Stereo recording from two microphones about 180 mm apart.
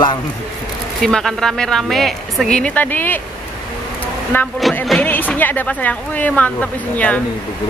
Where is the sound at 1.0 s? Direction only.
5° left (ahead or behind).